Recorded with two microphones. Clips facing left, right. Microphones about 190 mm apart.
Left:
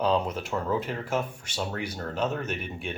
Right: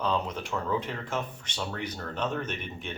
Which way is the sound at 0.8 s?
10° left (ahead or behind).